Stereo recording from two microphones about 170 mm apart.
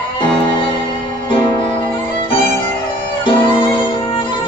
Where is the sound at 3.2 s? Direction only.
30° left (ahead or behind).